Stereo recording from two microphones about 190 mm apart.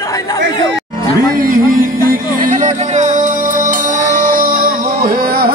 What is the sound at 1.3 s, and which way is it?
Music, 45° right (ahead or behind).